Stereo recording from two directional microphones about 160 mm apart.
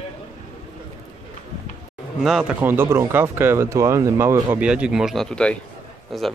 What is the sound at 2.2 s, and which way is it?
Speech, centre (ahead or behind).